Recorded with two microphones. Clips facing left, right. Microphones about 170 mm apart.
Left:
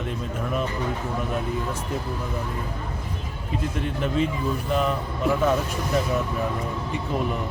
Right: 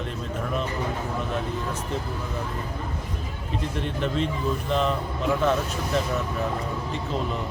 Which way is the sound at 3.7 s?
5° left (ahead or behind).